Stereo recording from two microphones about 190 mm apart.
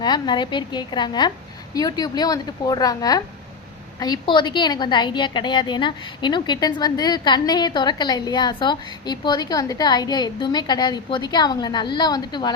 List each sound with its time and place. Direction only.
0.0 s a woman's voice: 25° left (ahead or behind)